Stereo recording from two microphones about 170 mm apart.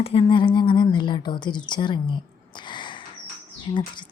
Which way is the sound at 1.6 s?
25° left (ahead or behind).